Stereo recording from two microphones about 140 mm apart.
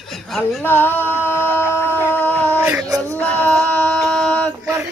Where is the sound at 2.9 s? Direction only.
25° right (ahead or behind).